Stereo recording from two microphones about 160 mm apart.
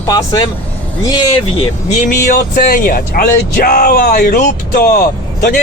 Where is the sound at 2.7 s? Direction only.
65° left (ahead or behind).